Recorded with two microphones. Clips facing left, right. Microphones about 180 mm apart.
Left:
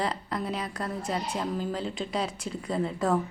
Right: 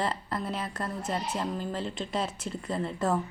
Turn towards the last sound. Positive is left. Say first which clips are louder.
# left 2 dB
turn(degrees=0)  # may be behind; listen again after turning